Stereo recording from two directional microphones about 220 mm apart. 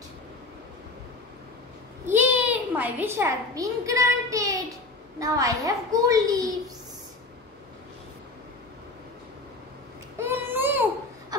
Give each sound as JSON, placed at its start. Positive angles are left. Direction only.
{"t": 2.0, "sound": "a child's voice", "side_deg": -10}
{"t": 10.1, "sound": "baby cry", "side_deg": -10}